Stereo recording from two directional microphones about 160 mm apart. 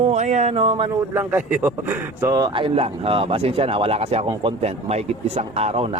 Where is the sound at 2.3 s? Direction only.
30° right (ahead or behind).